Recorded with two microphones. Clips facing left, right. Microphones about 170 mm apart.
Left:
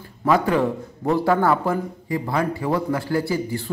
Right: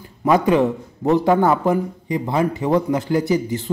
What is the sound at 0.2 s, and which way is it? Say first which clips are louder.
Speech: right 3 dB; 20° right (ahead or behind).